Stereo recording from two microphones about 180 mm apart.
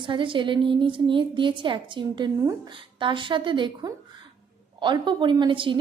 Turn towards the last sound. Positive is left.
turn(degrees=-30)  # may be behind; listen again after turning